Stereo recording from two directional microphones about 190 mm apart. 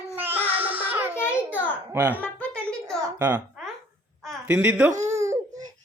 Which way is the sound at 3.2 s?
10° right (ahead or behind).